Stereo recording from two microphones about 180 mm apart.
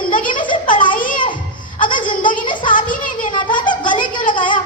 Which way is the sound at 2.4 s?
25° left (ahead or behind).